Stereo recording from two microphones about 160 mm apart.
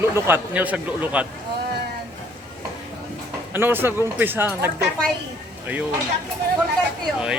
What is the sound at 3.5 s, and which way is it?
Speech, 15° right (ahead or behind).